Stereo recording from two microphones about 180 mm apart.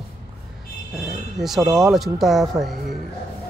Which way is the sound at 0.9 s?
Centre (ahead or behind).